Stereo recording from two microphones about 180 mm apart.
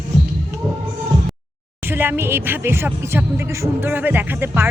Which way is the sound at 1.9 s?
10° right (ahead or behind).